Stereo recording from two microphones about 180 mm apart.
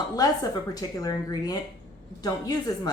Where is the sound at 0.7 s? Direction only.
20° left (ahead or behind).